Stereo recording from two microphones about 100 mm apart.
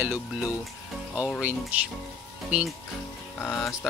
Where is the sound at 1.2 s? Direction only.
15° right (ahead or behind).